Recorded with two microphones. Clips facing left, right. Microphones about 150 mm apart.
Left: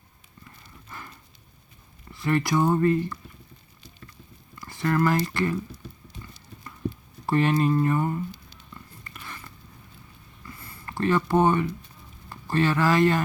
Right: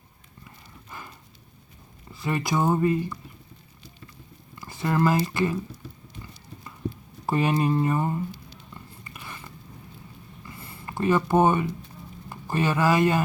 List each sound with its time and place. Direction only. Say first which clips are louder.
0.4 s horse: right 1 dB; 15° right (ahead or behind)
2.2 s speech: left 2 dB; 20° right (ahead or behind)
4.5 s speech: left 1 dB; 20° right (ahead or behind)
7.3 s speech: left 1 dB; 15° right (ahead or behind)
8.7 s a sound: left 1 dB; 15° right (ahead or behind)
10.8 s speech: right 1 dB; 15° right (ahead or behind)